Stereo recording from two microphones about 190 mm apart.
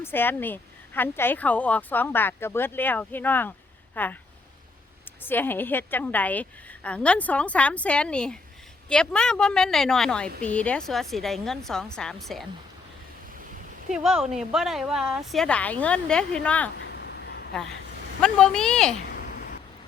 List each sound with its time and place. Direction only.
0.0 s speech: 10° left (ahead or behind)
5.2 s a woman's voice: 10° left (ahead or behind)
13.9 s a woman's voice: centre (ahead or behind)
16.9 s a sound: 60° left (ahead or behind)
18.2 s a woman's voice: 5° left (ahead or behind)